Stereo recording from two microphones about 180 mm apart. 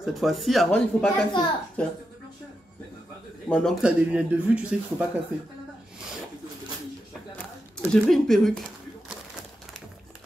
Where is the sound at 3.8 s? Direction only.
5° right (ahead or behind).